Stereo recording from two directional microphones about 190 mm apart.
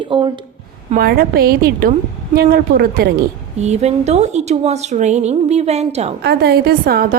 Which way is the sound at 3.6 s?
35° right (ahead or behind).